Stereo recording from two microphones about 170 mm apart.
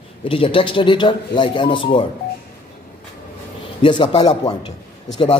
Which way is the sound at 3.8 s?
30° left (ahead or behind).